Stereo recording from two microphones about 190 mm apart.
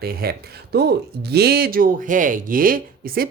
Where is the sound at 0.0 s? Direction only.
55° right (ahead or behind).